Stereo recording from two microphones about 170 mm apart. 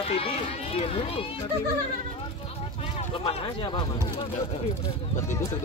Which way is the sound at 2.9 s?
35° left (ahead or behind).